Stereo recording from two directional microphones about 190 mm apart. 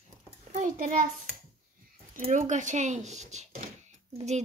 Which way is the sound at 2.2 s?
40° right (ahead or behind).